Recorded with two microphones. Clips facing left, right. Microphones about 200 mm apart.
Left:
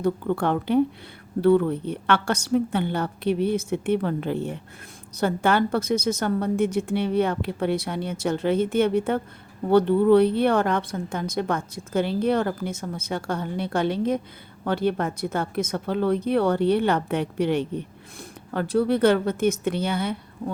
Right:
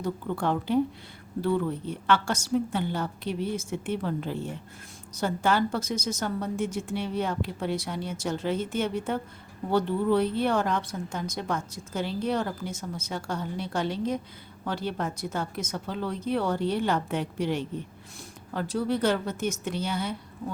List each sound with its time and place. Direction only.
0.0 s a woman's voice: 60° left (ahead or behind)